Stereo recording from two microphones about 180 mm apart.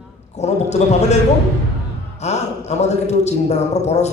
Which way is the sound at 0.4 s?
40° left (ahead or behind).